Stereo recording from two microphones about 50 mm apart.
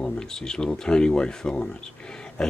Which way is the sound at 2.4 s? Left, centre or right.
Centre.